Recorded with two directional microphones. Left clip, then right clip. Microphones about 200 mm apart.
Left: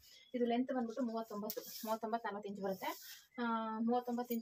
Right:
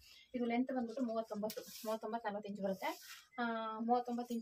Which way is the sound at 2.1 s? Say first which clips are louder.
Left 1 dB; 30° left (ahead or behind).